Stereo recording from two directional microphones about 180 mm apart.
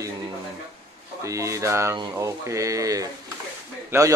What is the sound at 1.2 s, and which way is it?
Speech, 15° right (ahead or behind).